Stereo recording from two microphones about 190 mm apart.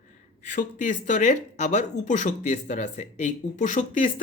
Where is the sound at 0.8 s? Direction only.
40° left (ahead or behind).